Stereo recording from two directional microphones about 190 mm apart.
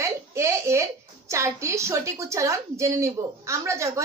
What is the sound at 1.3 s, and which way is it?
A woman's voice, 15° right (ahead or behind).